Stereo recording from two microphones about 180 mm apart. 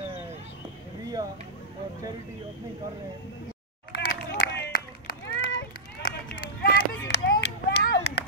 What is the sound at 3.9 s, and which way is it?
Run, 65° left (ahead or behind).